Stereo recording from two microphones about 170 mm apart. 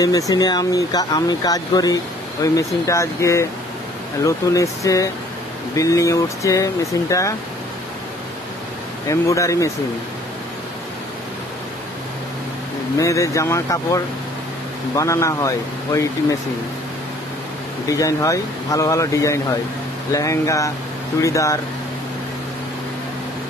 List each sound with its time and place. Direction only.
0.0 s speech: 20° left (ahead or behind)
9.1 s speech: 20° left (ahead or behind)
12.9 s speech: 20° left (ahead or behind)
17.8 s speech: 20° left (ahead or behind)